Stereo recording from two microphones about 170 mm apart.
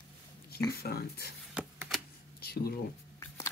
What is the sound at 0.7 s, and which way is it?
Speech, 65° left (ahead or behind).